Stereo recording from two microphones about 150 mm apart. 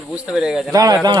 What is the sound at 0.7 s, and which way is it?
Speech, 25° right (ahead or behind).